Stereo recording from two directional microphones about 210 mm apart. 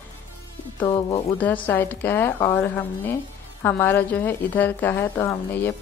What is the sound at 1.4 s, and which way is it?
A woman's voice, 10° left (ahead or behind).